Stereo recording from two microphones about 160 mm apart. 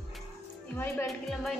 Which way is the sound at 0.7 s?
10° left (ahead or behind).